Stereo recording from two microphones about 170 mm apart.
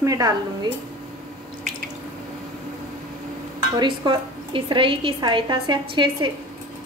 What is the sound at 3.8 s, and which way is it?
A woman's voice, 30° right (ahead or behind).